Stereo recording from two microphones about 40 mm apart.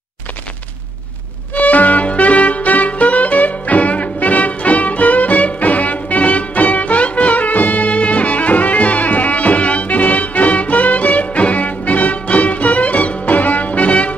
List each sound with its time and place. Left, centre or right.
1.5 s music: left